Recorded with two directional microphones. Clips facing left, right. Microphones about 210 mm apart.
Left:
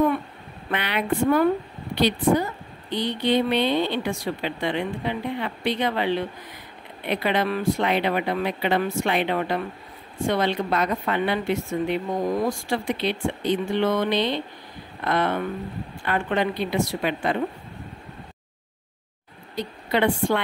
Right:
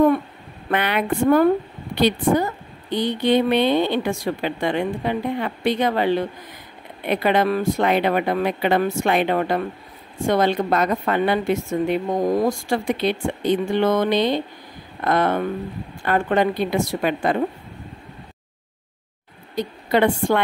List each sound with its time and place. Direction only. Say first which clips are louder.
0.7 s a woman's voice: right 4 dB; 50° right (ahead or behind)
19.5 s a woman's voice: right 4 dB; 45° right (ahead or behind)